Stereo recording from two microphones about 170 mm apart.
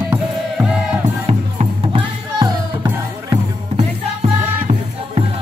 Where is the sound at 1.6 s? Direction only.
30° right (ahead or behind).